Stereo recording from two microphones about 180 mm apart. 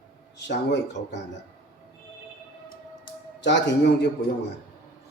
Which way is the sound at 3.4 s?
75° left (ahead or behind).